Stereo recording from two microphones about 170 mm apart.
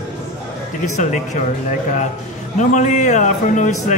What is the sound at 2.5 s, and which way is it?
A man's voice, 45° left (ahead or behind).